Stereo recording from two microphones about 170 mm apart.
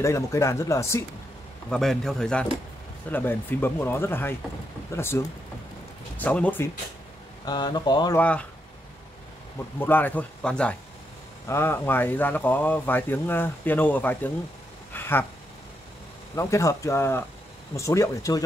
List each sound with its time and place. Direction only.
0.0 s speech: 15° left (ahead or behind)
1.7 s a man's voice: centre (ahead or behind)
7.4 s speech: 25° left (ahead or behind)
8.2 s speech: 10° left (ahead or behind)
9.8 s speech: 10° left (ahead or behind)
14.9 s a sound: 10° left (ahead or behind)
16.3 s speech: 15° left (ahead or behind)